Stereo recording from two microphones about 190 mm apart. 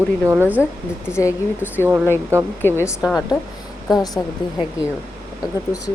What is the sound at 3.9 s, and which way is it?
Speech, 20° left (ahead or behind).